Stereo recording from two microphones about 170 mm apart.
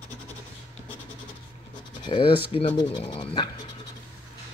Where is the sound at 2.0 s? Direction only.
30° left (ahead or behind).